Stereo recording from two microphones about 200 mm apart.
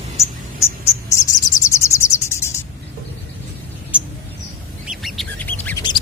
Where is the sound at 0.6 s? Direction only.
15° left (ahead or behind).